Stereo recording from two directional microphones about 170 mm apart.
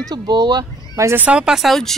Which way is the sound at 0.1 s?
25° right (ahead or behind).